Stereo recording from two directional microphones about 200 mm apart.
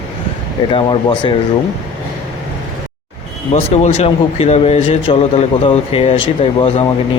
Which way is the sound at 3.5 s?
30° left (ahead or behind).